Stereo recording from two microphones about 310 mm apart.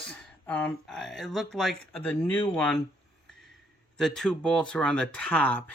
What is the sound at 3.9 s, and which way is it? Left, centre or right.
Speech, centre.